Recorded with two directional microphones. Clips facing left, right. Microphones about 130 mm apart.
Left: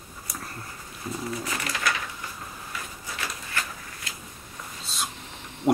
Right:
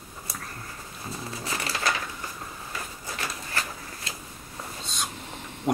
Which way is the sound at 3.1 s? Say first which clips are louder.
Even; 35° right (ahead or behind).